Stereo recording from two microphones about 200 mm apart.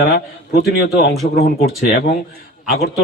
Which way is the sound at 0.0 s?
55° left (ahead or behind).